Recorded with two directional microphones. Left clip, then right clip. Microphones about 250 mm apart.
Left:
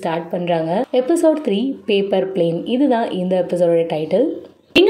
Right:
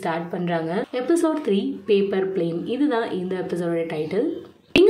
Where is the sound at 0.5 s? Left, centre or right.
Centre.